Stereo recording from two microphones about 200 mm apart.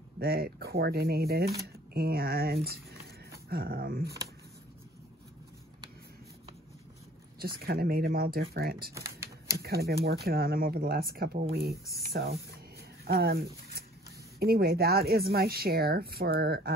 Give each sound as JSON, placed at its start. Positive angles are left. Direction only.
{"t": 0.2, "sound": "speech", "side_deg": -50}
{"t": 7.4, "sound": "speech", "side_deg": -50}
{"t": 8.9, "sound": "typing", "side_deg": -15}
{"t": 9.6, "sound": "speech", "side_deg": -50}